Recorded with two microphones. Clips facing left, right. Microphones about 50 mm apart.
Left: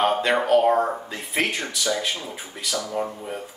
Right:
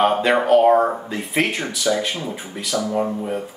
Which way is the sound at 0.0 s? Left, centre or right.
Centre.